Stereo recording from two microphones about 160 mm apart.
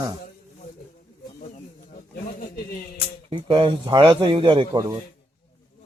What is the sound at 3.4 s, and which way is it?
A man's voice, 30° right (ahead or behind).